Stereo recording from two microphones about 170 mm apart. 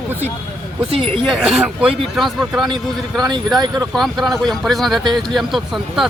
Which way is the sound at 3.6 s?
25° right (ahead or behind).